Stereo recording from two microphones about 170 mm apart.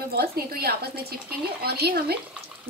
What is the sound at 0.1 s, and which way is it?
Speech, 65° right (ahead or behind).